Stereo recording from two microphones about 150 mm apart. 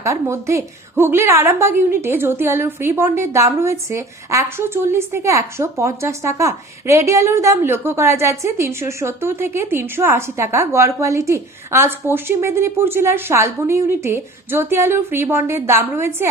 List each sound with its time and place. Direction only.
0.0 s a woman's voice: 20° right (ahead or behind)